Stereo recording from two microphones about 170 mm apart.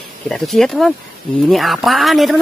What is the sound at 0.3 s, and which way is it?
Speech, centre (ahead or behind).